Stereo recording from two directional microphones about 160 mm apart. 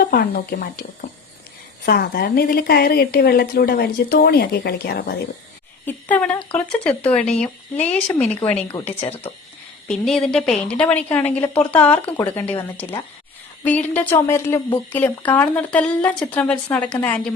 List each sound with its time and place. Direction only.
0.0 s a woman's voice: 65° left (ahead or behind)
5.8 s a woman's voice: 10° left (ahead or behind)
9.0 s speech: 35° left (ahead or behind)
9.9 s a woman's voice: 5° left (ahead or behind)